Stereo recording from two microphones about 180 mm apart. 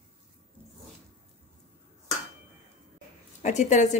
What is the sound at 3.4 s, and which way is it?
Speech, 40° left (ahead or behind).